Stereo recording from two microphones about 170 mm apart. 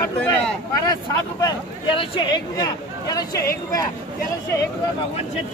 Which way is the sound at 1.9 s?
30° left (ahead or behind).